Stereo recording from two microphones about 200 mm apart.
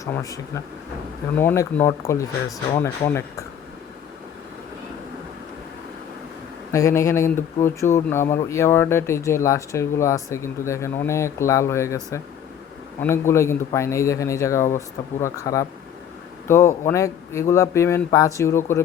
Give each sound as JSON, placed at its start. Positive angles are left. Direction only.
{"t": 0.0, "sound": "speech", "side_deg": 15}
{"t": 6.7, "sound": "speech", "side_deg": 15}
{"t": 13.0, "sound": "speech", "side_deg": 15}